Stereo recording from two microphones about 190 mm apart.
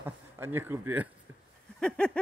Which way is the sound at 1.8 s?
5° left (ahead or behind).